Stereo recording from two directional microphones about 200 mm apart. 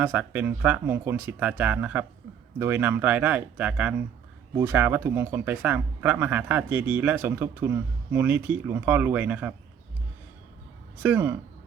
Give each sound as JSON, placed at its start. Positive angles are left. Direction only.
{"t": 0.0, "sound": "speech", "side_deg": -10}
{"t": 11.0, "sound": "speech", "side_deg": -10}